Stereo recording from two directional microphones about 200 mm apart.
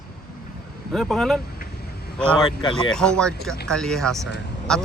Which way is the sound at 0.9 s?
Centre (ahead or behind).